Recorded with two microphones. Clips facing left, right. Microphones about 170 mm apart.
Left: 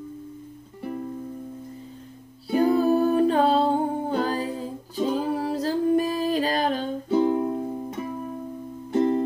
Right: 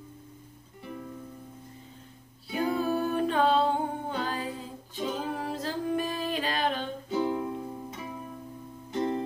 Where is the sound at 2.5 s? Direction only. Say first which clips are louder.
Left 8 dB; 40° left (ahead or behind).